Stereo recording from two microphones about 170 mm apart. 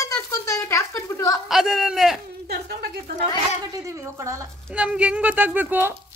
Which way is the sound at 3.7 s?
15° right (ahead or behind).